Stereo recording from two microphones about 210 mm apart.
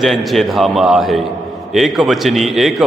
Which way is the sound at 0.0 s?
Centre (ahead or behind).